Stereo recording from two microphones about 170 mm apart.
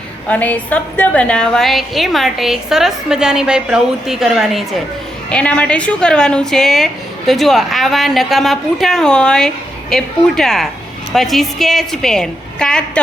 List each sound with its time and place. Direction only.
0.3 s a woman's voice: 10° left (ahead or behind)